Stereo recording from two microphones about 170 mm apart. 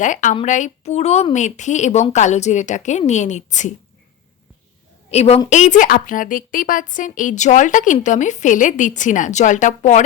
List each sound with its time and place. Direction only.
0.0 s a woman's voice: 50° left (ahead or behind)
5.1 s a woman's voice: 40° left (ahead or behind)